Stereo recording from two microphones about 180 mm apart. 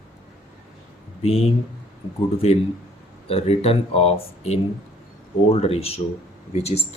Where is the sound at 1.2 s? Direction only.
35° left (ahead or behind).